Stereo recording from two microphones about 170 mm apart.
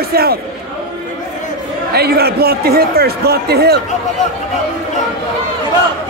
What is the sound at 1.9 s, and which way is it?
A man's voice, 70° right (ahead or behind).